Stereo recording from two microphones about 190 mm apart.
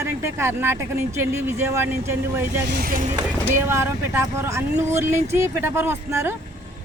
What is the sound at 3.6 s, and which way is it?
Speech, 15° right (ahead or behind).